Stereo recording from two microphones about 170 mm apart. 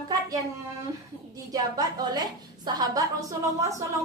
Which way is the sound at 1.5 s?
25° right (ahead or behind).